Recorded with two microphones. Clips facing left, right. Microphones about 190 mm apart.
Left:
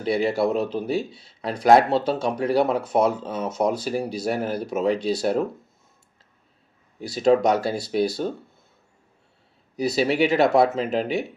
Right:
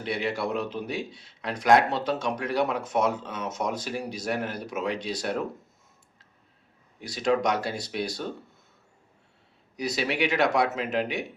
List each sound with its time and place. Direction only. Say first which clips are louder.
0.0 s speech: left 8 dB; 35° left (ahead or behind)
7.1 s speech: left 6 dB; 35° left (ahead or behind)
9.9 s speech: left 7 dB; 35° left (ahead or behind)